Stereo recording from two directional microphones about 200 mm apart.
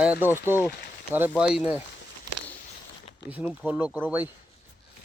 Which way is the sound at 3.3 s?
5° right (ahead or behind).